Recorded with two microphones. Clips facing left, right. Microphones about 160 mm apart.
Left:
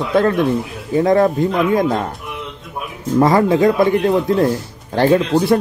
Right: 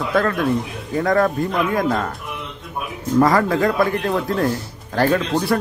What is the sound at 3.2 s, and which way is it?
A man's voice, 25° left (ahead or behind).